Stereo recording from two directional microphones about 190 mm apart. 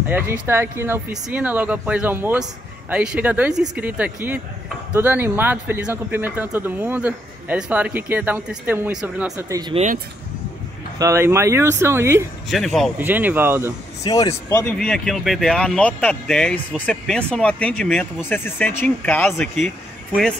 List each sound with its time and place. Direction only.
0.1 s speech: 15° right (ahead or behind)
11.0 s speech: 15° right (ahead or behind)
12.4 s speech: centre (ahead or behind)
13.0 s speech: 10° right (ahead or behind)
14.0 s speech: 20° left (ahead or behind)
14.7 s speech: 5° left (ahead or behind)